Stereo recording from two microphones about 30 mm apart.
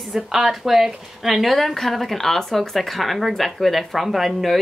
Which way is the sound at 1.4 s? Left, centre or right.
Centre.